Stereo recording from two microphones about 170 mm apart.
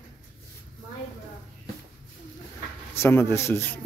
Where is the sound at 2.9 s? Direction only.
15° left (ahead or behind).